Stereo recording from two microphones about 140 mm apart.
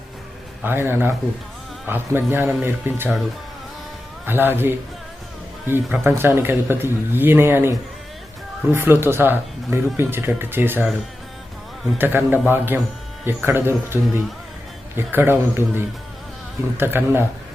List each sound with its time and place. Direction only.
0.6 s speech: 15° right (ahead or behind)
4.3 s speech: 15° right (ahead or behind)
11.9 s speech: 15° right (ahead or behind)